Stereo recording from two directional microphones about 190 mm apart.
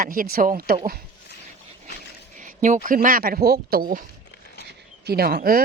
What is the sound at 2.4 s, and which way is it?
Speech, 40° right (ahead or behind).